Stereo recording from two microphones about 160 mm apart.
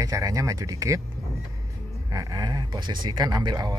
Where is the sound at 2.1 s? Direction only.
25° right (ahead or behind).